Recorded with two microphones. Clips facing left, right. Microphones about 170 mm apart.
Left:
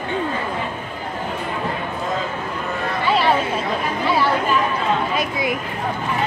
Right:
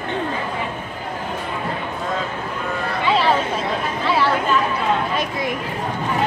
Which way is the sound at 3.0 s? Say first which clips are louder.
Even; centre (ahead or behind).